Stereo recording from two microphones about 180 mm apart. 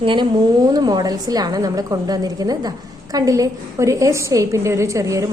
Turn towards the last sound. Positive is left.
turn(degrees=-20)  # may be behind; listen again after turning